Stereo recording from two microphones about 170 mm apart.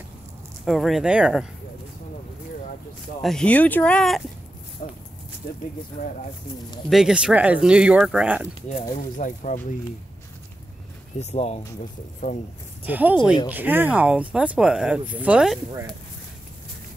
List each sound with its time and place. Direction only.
0.7 s speech: centre (ahead or behind)
3.2 s speech: 5° left (ahead or behind)
6.9 s speech: 5° right (ahead or behind)
9.2 s speech: 50° left (ahead or behind)
11.1 s speech: 40° left (ahead or behind)
12.2 s speech: 60° left (ahead or behind)
12.8 s speech: 10° right (ahead or behind)